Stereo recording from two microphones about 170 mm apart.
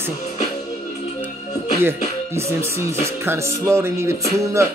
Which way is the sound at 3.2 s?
15° right (ahead or behind).